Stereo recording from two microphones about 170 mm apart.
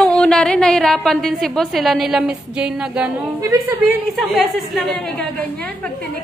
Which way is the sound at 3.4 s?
15° right (ahead or behind).